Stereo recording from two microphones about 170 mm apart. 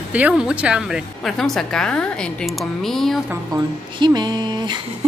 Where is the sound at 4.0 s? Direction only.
25° right (ahead or behind).